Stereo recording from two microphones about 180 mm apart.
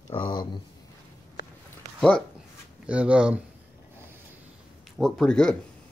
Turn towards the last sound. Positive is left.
turn(degrees=5)  # may be behind; listen again after turning